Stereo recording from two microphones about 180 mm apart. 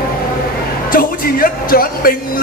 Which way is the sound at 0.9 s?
55° left (ahead or behind).